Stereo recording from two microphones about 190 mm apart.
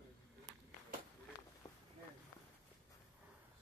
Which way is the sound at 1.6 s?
20° left (ahead or behind).